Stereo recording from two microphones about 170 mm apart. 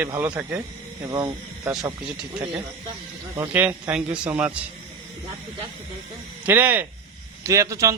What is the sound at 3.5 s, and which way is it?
Speech, 10° right (ahead or behind).